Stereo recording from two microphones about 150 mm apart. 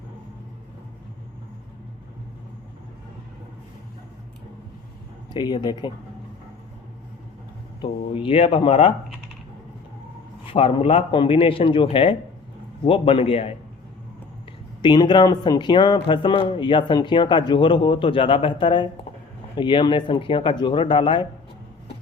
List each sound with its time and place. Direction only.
5.3 s speech: 30° left (ahead or behind)
7.8 s speech: 35° left (ahead or behind)
10.4 s speech: 35° left (ahead or behind)
14.8 s speech: 30° left (ahead or behind)